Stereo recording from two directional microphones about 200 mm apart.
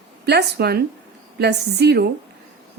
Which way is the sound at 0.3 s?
55° right (ahead or behind).